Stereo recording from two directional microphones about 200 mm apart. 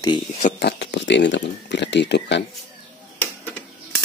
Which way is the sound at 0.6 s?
60° left (ahead or behind).